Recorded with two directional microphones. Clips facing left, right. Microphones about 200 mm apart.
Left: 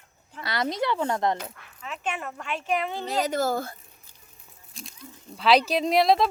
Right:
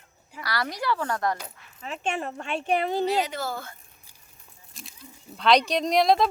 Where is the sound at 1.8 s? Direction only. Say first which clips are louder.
Right 3 dB; 30° right (ahead or behind).